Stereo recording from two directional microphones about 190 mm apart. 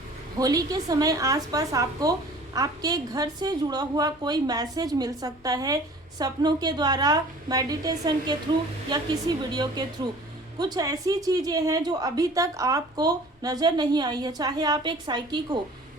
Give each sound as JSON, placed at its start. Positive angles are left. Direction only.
{"t": 0.3, "sound": "a woman's voice", "side_deg": -20}